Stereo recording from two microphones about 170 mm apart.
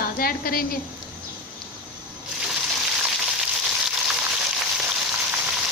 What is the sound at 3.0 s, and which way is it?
Frying, 5° right (ahead or behind).